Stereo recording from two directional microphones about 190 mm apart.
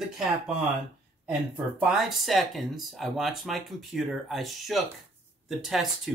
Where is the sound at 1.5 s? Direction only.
5° right (ahead or behind).